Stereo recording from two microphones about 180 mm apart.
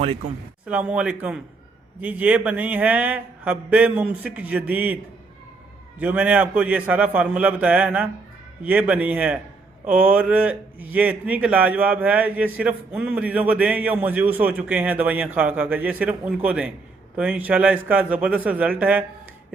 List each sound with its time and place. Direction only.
0.0 s speech: 35° right (ahead or behind)
0.6 s speech: 10° right (ahead or behind)
6.0 s speech: 10° right (ahead or behind)